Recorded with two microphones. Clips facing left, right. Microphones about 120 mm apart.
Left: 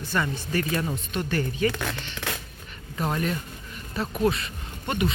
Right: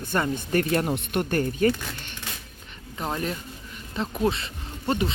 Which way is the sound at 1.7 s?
70° left (ahead or behind).